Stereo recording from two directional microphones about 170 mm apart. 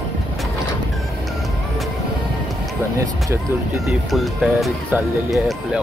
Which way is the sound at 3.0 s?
15° right (ahead or behind).